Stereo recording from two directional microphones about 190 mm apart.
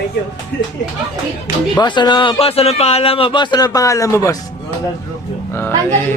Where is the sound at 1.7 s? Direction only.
25° left (ahead or behind).